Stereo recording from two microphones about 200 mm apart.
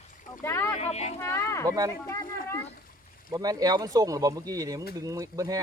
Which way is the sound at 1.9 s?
15° left (ahead or behind).